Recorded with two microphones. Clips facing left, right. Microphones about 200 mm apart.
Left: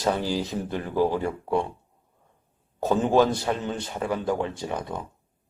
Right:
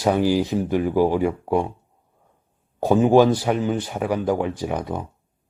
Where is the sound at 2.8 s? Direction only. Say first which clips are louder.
Right 6 dB; 10° right (ahead or behind).